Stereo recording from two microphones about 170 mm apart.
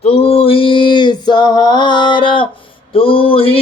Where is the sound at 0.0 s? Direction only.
35° left (ahead or behind).